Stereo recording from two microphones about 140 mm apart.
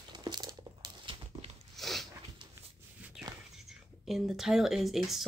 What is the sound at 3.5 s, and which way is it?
Speech, centre (ahead or behind).